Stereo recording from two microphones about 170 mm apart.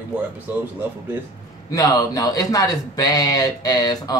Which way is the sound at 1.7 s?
20° left (ahead or behind).